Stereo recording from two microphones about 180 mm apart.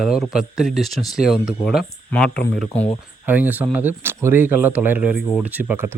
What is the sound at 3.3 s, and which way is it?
Speech, 10° right (ahead or behind).